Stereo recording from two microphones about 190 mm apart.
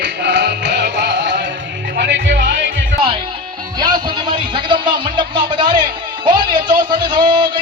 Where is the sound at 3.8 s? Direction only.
25° right (ahead or behind).